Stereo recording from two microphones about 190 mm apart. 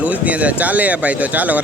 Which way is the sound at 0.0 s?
5° right (ahead or behind).